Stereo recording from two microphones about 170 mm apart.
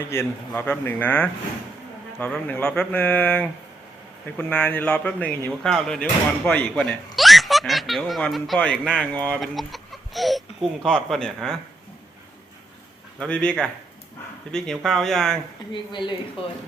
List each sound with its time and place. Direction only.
0.1 s speech: 15° left (ahead or behind)
13.1 s speech: 5° left (ahead or behind)
15.7 s speech: 25° left (ahead or behind)